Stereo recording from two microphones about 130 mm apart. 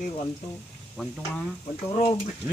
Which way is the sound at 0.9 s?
Centre (ahead or behind).